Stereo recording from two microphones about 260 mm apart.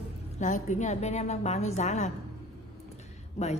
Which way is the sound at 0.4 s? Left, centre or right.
Left.